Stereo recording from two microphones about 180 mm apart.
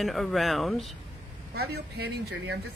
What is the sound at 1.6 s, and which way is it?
Speech, 65° right (ahead or behind).